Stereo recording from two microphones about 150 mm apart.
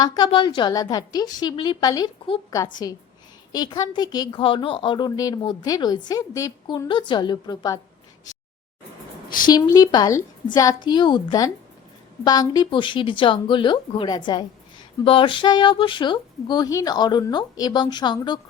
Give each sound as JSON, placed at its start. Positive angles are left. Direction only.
{"t": 0.0, "sound": "a woman's voice", "side_deg": 30}
{"t": 9.6, "sound": "a woman's voice", "side_deg": 25}